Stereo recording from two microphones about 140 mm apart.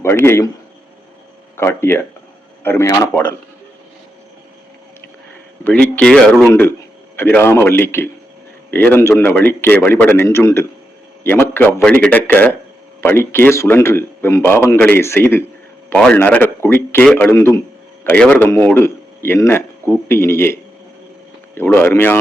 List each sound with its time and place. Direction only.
0.0 s a man's voice: 15° left (ahead or behind)
1.5 s a man's voice: 15° left (ahead or behind)
5.6 s a man's voice: 10° left (ahead or behind)
6.4 s a man's voice: 15° left (ahead or behind)
11.2 s a sound: 15° left (ahead or behind)
11.8 s a man's voice: 10° left (ahead or behind)